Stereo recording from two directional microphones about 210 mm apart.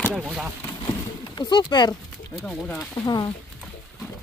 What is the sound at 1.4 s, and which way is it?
Speech, 20° left (ahead or behind).